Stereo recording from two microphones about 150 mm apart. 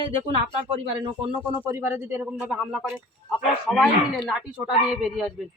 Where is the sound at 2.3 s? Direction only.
Centre (ahead or behind).